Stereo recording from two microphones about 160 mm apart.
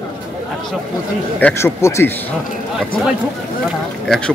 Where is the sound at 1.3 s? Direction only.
15° left (ahead or behind).